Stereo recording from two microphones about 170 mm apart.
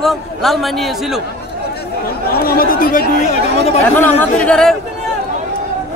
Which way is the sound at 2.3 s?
60° left (ahead or behind).